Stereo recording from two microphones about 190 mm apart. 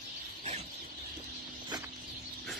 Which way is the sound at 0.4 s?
35° right (ahead or behind).